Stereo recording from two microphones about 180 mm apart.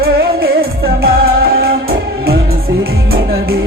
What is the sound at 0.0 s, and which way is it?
Music, 60° right (ahead or behind).